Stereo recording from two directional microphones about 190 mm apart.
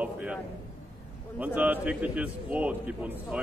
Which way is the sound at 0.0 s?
5° right (ahead or behind).